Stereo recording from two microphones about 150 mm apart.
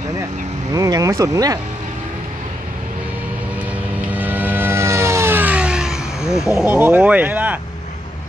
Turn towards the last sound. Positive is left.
turn(degrees=-10)  # may be behind; listen again after turning